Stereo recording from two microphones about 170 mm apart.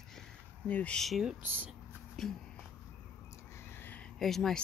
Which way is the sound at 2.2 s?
Centre (ahead or behind).